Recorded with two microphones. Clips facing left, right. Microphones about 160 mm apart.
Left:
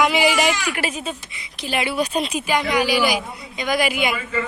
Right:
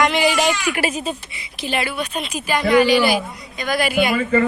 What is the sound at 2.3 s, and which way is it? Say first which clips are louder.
A woman's voice: right 4 dB; 15° left (ahead or behind).